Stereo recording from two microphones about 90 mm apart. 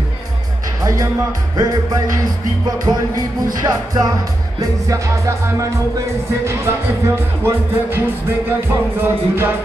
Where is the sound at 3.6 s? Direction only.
45° right (ahead or behind).